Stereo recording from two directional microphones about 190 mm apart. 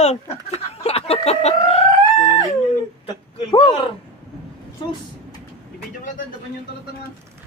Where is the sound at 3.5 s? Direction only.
25° left (ahead or behind).